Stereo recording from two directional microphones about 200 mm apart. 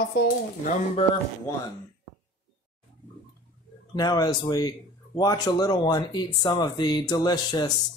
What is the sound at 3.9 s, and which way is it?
A man's voice, 20° left (ahead or behind).